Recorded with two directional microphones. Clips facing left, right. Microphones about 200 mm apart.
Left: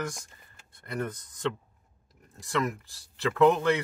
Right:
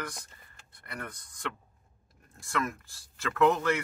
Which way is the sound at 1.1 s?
40° left (ahead or behind).